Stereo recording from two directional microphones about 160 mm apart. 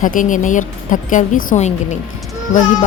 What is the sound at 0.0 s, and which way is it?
A woman's voice, 55° left (ahead or behind).